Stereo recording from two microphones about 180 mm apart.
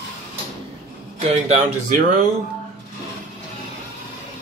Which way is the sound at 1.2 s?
40° right (ahead or behind).